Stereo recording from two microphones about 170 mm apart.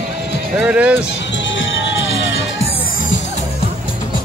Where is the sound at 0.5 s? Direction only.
5° right (ahead or behind).